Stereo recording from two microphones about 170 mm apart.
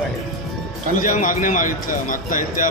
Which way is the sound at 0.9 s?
50° left (ahead or behind).